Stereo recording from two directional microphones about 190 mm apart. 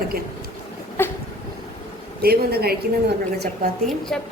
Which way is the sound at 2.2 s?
55° right (ahead or behind).